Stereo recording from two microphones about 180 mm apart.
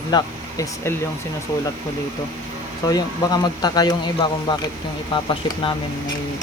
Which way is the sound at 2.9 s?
20° left (ahead or behind).